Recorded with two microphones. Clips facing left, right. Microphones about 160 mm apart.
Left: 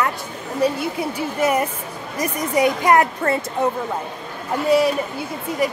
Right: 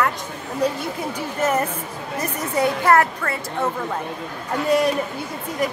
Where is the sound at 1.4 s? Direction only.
10° left (ahead or behind).